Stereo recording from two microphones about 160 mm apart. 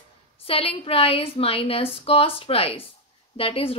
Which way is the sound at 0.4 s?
35° left (ahead or behind).